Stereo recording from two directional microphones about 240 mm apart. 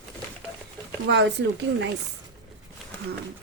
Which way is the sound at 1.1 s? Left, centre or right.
Right.